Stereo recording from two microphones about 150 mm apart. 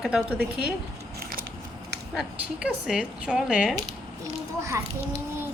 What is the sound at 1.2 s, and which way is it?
Biting, 75° right (ahead or behind).